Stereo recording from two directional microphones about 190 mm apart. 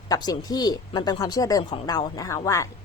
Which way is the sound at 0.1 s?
20° left (ahead or behind).